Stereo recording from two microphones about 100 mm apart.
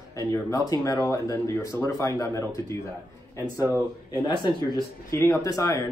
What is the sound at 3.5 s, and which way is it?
Speech, 25° right (ahead or behind).